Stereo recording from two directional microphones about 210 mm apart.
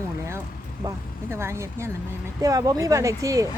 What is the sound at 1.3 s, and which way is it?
Speech, 10° right (ahead or behind).